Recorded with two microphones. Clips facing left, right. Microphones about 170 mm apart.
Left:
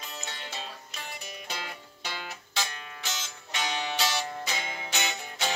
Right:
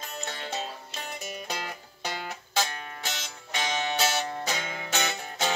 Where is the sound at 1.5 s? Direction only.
45° right (ahead or behind).